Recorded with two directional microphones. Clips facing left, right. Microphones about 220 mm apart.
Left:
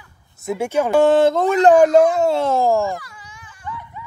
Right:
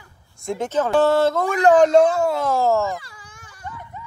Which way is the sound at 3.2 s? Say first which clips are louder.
Left 3 dB; 45° right (ahead or behind).